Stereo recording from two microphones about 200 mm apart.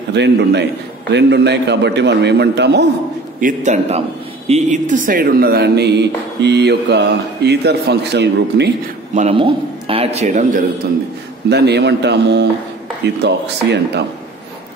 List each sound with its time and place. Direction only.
0.1 s speech: 60° right (ahead or behind)
3.3 s speech: 40° right (ahead or behind); by 8.7 s 60° right (ahead or behind)
9.1 s speech: 30° right (ahead or behind)
11.4 s speech: 55° right (ahead or behind)